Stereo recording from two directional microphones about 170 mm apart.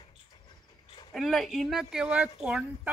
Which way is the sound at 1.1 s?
Centre (ahead or behind).